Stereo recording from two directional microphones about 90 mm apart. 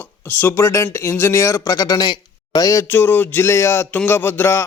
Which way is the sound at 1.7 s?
45° left (ahead or behind).